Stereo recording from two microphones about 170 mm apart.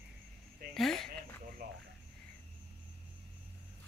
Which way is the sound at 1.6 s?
65° right (ahead or behind).